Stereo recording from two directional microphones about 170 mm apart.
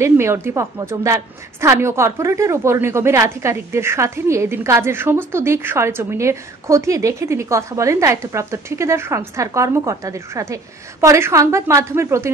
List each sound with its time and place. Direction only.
0.0 s a woman's voice: 15° right (ahead or behind)